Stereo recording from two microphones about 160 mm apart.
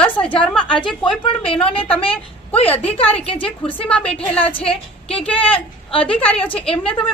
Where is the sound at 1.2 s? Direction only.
35° left (ahead or behind).